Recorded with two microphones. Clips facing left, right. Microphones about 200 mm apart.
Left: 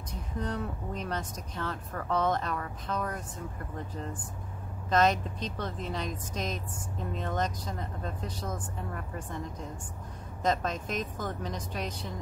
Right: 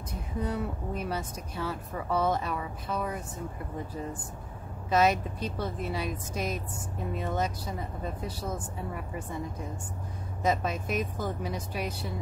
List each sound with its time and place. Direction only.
0.1 s speech: 10° right (ahead or behind)